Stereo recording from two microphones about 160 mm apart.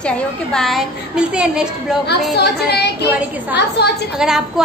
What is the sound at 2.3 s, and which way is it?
Speech, 90° left.